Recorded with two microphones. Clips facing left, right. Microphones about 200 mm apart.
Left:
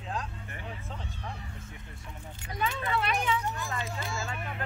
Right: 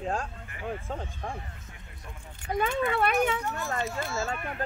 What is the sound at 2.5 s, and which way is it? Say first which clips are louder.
Speech: right 5 dB; 55° right (ahead or behind).